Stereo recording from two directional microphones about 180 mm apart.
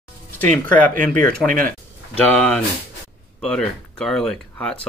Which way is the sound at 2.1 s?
10° left (ahead or behind).